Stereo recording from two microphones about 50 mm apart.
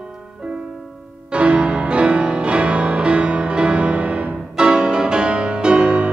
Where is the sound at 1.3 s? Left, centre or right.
Right.